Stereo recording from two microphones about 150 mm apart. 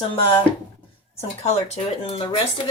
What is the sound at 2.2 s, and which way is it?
Speech, 35° left (ahead or behind).